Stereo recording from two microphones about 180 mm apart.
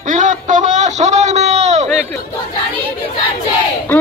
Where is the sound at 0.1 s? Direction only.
45° right (ahead or behind).